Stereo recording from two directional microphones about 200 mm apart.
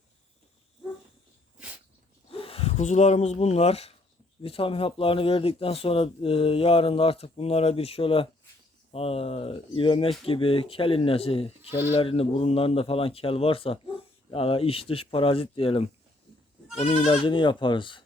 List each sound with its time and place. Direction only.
2.3 s speech: 30° left (ahead or behind)